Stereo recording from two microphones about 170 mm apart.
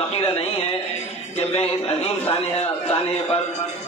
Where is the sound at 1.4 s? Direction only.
40° left (ahead or behind).